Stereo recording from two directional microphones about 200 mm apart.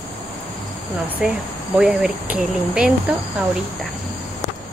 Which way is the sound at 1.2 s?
5° right (ahead or behind).